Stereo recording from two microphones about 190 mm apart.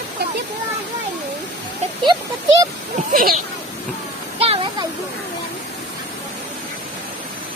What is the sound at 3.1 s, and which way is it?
Speech, 45° right (ahead or behind).